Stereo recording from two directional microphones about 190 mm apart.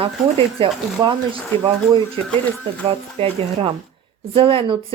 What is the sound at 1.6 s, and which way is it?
Speech, 20° right (ahead or behind).